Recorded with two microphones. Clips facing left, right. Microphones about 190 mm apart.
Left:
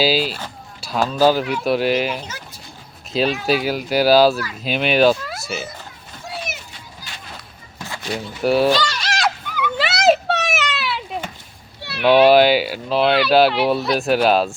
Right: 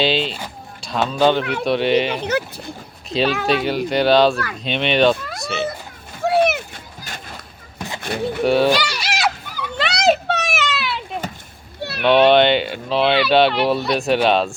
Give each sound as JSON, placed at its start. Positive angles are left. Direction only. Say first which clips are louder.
{"t": 0.0, "sound": "speech", "louder": "left 1 dB", "side_deg": 5}
{"t": 2.1, "sound": "speech", "louder": "right 11 dB", "side_deg": -65}
{"t": 3.1, "sound": "speech", "louder": "even", "side_deg": 0}
{"t": 6.2, "sound": "a sound", "louder": "right 15 dB", "side_deg": -60}
{"t": 7.8, "sound": "a sound", "louder": "right 3 dB", "side_deg": -20}
{"t": 8.0, "sound": "speech", "louder": "right 5 dB", "side_deg": -55}
{"t": 8.4, "sound": "speech", "louder": "even", "side_deg": 0}
{"t": 8.7, "sound": "goat", "louder": "even", "side_deg": -10}
{"t": 9.7, "sound": "children playing", "louder": "left 1 dB", "side_deg": 5}
{"t": 11.8, "sound": "a sound", "louder": "right 4 dB", "side_deg": -45}
{"t": 12.0, "sound": "speech", "louder": "left 1 dB", "side_deg": 5}